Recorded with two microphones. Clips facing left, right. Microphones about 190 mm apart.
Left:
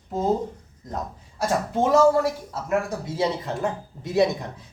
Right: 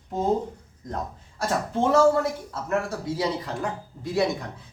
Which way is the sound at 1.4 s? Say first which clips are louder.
Left 2 dB; 10° left (ahead or behind).